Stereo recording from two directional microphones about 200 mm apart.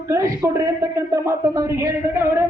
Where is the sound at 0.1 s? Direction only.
15° right (ahead or behind).